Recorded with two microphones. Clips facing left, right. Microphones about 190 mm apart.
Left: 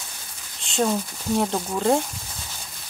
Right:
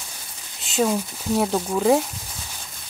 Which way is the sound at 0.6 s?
5° right (ahead or behind).